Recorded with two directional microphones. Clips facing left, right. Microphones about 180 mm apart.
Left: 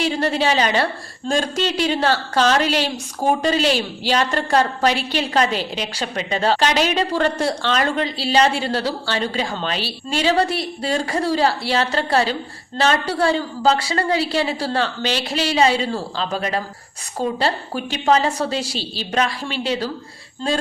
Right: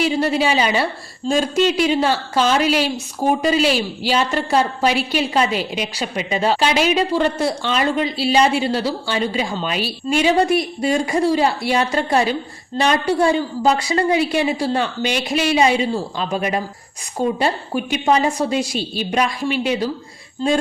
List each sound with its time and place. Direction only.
0.2 s a woman's voice: 10° right (ahead or behind)
3.6 s a woman's voice: 40° left (ahead or behind)
4.1 s a woman's voice: 5° right (ahead or behind)
8.0 s a woman's voice: 40° left (ahead or behind)
8.3 s a woman's voice: 10° right (ahead or behind)